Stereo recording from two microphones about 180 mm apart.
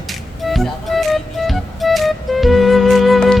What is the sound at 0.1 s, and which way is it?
Music, centre (ahead or behind).